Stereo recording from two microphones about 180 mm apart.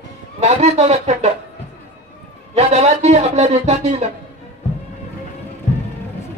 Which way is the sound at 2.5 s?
35° right (ahead or behind).